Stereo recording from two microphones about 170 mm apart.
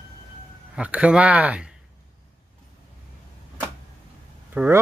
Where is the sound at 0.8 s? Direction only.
5° right (ahead or behind).